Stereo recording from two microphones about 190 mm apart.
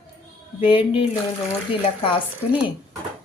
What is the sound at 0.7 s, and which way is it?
Speech, 30° left (ahead or behind).